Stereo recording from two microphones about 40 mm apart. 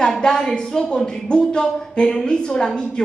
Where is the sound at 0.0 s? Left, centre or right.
Centre.